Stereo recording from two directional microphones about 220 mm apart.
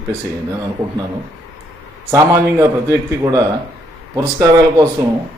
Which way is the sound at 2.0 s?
15° right (ahead or behind).